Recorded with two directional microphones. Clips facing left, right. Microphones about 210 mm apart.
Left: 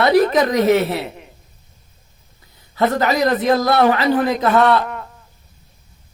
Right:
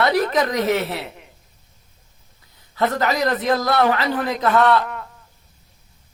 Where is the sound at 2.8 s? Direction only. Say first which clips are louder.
Left 3 dB; 25° left (ahead or behind).